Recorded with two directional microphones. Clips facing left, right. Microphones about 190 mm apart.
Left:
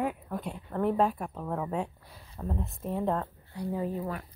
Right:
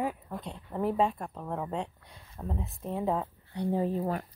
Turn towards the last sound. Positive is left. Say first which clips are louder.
# right 3 dB
turn(degrees=-30)  # may be behind; listen again after turning